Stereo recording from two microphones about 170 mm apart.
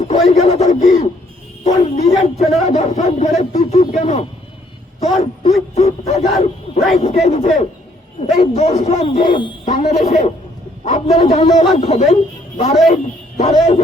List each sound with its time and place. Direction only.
0.3 s a sound: 40° left (ahead or behind)
1.6 s a man's voice: 40° left (ahead or behind)
9.6 s a man's voice: 45° left (ahead or behind)